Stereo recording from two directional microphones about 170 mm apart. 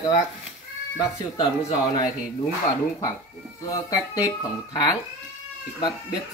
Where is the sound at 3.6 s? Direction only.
20° left (ahead or behind).